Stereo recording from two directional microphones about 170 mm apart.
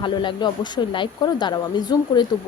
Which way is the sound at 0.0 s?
30° left (ahead or behind).